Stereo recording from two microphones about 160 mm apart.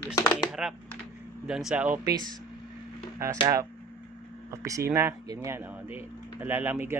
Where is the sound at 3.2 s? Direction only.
20° right (ahead or behind).